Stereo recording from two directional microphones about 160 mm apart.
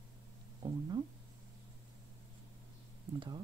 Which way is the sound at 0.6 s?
30° right (ahead or behind).